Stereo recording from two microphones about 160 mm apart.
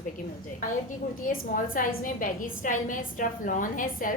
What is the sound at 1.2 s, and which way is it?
A woman's voice, 60° left (ahead or behind).